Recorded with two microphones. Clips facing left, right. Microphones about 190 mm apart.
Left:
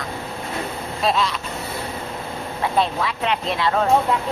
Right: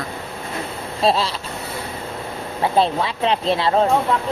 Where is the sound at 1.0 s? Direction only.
30° right (ahead or behind).